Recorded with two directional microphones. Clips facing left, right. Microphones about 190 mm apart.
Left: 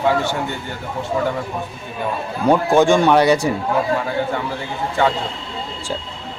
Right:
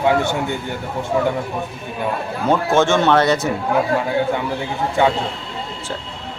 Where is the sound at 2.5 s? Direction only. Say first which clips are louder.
Left 2 dB; 15° left (ahead or behind).